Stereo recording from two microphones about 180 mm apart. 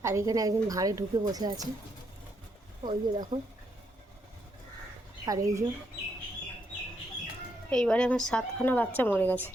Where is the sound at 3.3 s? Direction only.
35° right (ahead or behind).